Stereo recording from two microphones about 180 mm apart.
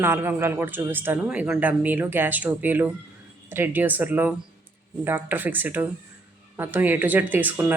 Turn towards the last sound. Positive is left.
turn(degrees=-10)  # may be behind; listen again after turning